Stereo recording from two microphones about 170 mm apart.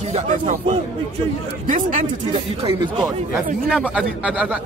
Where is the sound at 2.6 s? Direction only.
25° right (ahead or behind).